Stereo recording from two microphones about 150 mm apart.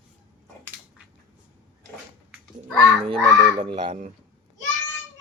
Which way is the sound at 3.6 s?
35° right (ahead or behind).